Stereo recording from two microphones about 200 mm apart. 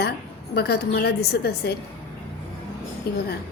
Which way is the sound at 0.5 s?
50° left (ahead or behind).